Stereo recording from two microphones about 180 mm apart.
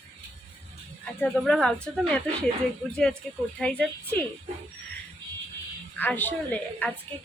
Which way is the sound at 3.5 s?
5° left (ahead or behind).